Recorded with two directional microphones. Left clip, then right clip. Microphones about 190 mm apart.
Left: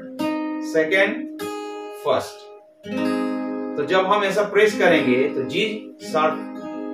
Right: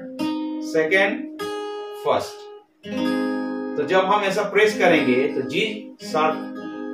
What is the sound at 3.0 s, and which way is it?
Music, 25° left (ahead or behind).